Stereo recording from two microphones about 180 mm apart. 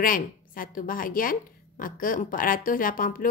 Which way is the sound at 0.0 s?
50° left (ahead or behind).